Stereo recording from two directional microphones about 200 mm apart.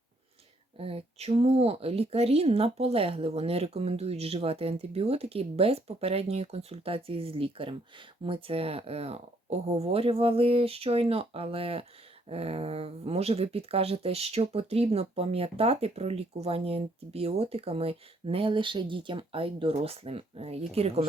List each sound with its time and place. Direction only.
0.8 s speech: 30° right (ahead or behind)